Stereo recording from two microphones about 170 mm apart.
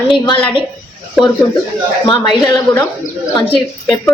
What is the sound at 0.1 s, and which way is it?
Speech, 30° left (ahead or behind).